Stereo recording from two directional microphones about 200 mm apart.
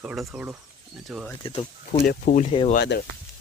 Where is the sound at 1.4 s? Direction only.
25° left (ahead or behind).